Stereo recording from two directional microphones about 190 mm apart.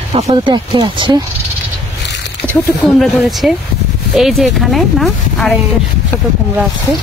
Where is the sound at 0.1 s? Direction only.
25° right (ahead or behind).